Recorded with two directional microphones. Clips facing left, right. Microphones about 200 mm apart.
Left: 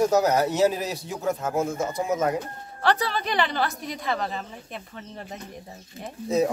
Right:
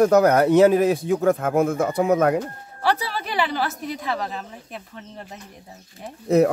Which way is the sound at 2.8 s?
10° right (ahead or behind).